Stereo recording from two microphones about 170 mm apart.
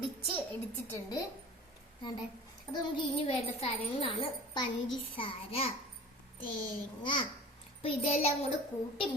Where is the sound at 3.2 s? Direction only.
35° left (ahead or behind).